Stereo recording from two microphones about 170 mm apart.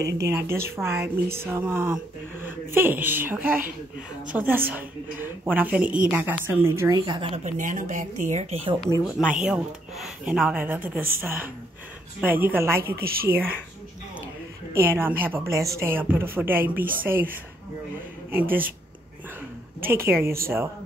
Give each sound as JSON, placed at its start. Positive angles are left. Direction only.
{"t": 0.0, "sound": "a woman's voice", "side_deg": -20}
{"t": 9.0, "sound": "a woman's voice", "side_deg": -5}
{"t": 12.9, "sound": "speech", "side_deg": -65}
{"t": 13.3, "sound": "a woman's voice", "side_deg": -15}
{"t": 14.7, "sound": "a woman's voice", "side_deg": -15}
{"t": 19.8, "sound": "a woman's voice", "side_deg": -15}